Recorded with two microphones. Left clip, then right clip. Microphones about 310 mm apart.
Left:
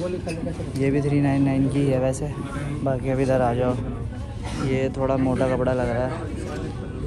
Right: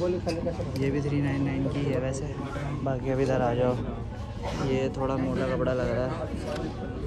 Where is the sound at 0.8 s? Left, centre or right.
Right.